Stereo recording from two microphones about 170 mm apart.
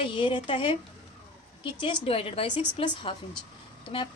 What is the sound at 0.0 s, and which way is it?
A woman's voice, 30° left (ahead or behind).